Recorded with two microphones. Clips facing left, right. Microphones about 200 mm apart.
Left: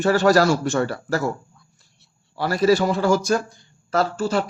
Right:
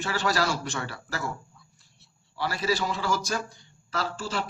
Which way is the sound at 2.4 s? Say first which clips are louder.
Left 10 dB; 50° left (ahead or behind).